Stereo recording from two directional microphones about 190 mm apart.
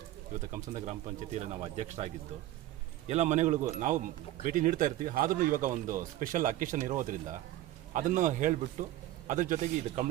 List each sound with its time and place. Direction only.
0.5 s speech: 40° right (ahead or behind)
3.1 s speech: 35° right (ahead or behind)